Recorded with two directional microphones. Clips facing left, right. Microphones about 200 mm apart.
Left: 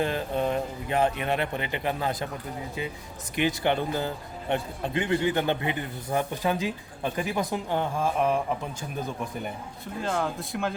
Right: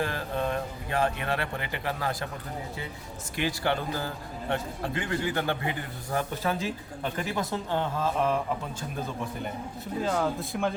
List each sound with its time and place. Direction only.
0.0 s speech: 20° left (ahead or behind)
3.3 s a man's voice: 20° left (ahead or behind)
10.0 s speech: centre (ahead or behind)